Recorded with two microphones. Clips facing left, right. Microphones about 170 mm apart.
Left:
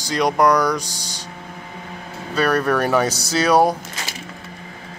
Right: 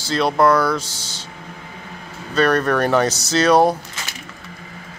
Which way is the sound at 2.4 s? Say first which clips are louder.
Right 2 dB; 10° left (ahead or behind).